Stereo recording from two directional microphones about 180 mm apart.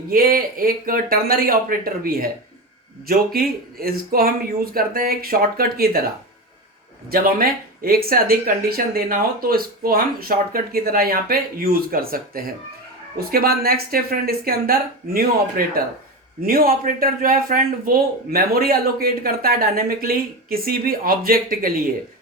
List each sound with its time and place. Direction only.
0.1 s speech: 55° right (ahead or behind)
7.1 s speech: 55° right (ahead or behind)